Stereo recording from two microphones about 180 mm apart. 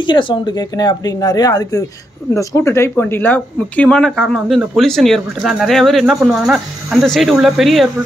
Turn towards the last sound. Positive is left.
turn(degrees=0)  # may be behind; listen again after turning